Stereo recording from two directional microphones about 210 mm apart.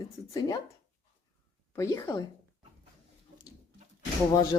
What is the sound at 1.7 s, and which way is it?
Speech, 15° left (ahead or behind).